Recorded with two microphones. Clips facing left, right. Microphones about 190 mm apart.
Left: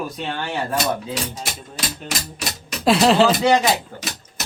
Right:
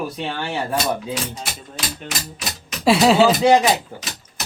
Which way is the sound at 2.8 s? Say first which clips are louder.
Right 1 dB; centre (ahead or behind).